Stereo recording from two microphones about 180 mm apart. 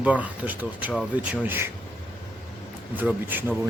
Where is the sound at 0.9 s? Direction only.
Centre (ahead or behind).